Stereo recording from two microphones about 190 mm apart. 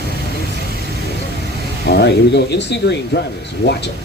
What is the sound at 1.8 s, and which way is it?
Speech, 60° left (ahead or behind).